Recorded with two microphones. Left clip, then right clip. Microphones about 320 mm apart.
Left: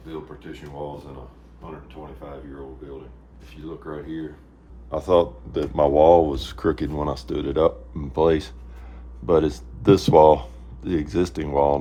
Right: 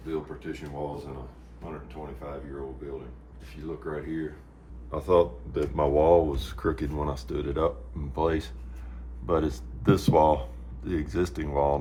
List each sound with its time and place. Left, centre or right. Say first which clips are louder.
3.7 s speech: left 1 dB; centre
4.9 s speech: left 4 dB; left